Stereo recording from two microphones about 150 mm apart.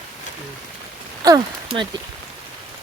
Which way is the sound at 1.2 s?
30° right (ahead or behind).